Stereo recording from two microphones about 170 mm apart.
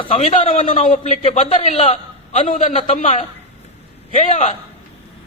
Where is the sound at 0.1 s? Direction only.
40° left (ahead or behind).